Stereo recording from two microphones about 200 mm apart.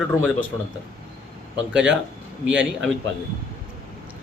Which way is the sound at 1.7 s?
5° right (ahead or behind).